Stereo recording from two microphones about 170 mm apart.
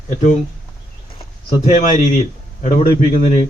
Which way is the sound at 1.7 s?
45° left (ahead or behind).